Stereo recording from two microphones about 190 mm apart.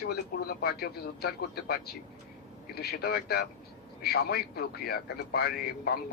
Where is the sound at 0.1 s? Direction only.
55° left (ahead or behind).